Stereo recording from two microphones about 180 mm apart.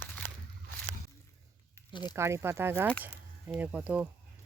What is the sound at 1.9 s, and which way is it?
Speech, 25° left (ahead or behind).